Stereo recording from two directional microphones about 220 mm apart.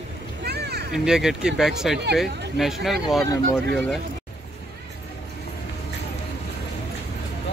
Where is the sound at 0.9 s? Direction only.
Centre (ahead or behind).